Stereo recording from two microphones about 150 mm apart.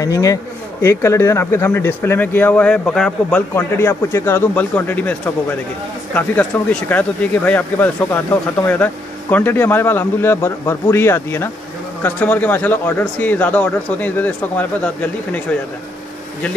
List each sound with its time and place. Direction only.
0.0 s speech: 25° left (ahead or behind); by 3.3 s 5° left (ahead or behind)
3.3 s speech: 15° left (ahead or behind)